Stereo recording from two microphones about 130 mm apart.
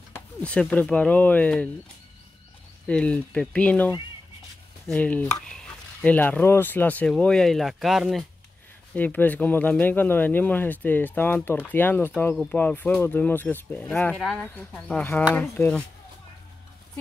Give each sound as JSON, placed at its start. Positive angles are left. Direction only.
{"t": 0.1, "sound": "speech", "side_deg": 10}
{"t": 2.9, "sound": "speech", "side_deg": 10}
{"t": 8.9, "sound": "speech", "side_deg": 15}